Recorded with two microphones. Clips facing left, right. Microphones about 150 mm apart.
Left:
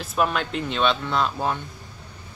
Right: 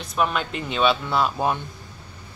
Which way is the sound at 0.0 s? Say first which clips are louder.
Even; centre (ahead or behind).